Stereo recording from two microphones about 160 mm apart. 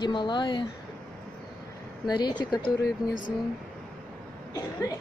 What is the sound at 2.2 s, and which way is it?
Speech, 25° left (ahead or behind).